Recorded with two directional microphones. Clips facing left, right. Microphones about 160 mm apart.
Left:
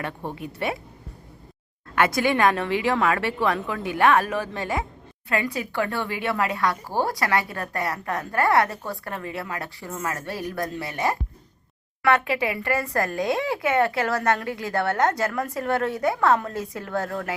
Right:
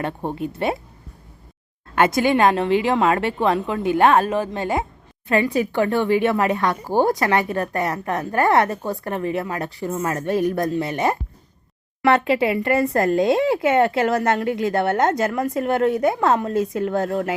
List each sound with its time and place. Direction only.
0.0 s a woman's voice: 35° right (ahead or behind)
2.0 s a woman's voice: 25° right (ahead or behind)